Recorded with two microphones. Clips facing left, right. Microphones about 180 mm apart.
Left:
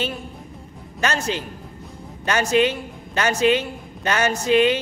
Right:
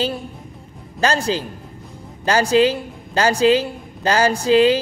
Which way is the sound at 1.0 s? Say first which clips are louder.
Right 4 dB; 35° right (ahead or behind).